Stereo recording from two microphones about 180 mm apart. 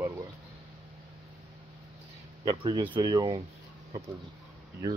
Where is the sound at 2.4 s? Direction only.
25° right (ahead or behind).